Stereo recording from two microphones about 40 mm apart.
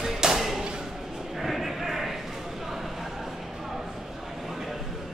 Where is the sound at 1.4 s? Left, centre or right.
Centre.